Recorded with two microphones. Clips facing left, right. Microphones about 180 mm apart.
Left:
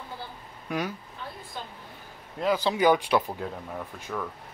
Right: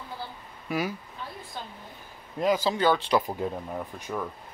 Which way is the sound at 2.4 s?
10° right (ahead or behind).